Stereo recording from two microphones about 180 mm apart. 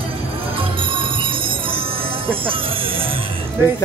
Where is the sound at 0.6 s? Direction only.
30° right (ahead or behind).